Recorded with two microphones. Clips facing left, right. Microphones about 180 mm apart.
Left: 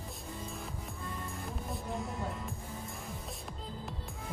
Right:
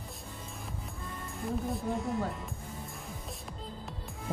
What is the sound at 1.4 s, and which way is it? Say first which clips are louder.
Speech: right 10 dB; centre (ahead or behind).